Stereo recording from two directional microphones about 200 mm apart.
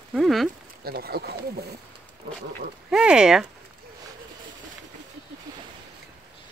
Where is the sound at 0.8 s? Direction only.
50° right (ahead or behind).